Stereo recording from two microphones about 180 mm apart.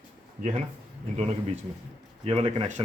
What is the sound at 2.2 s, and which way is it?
Speech, 30° right (ahead or behind).